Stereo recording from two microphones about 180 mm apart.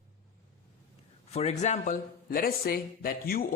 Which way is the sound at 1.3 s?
35° left (ahead or behind).